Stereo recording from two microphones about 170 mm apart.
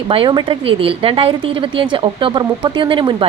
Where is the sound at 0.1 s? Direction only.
30° right (ahead or behind).